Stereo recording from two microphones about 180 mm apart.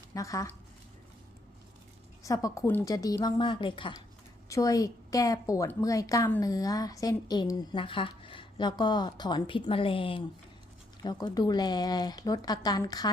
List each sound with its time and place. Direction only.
0.1 s speech: 20° left (ahead or behind)
2.2 s a woman's voice: 20° left (ahead or behind)